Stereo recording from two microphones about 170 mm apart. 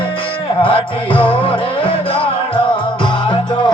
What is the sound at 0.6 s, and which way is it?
Music, 30° left (ahead or behind).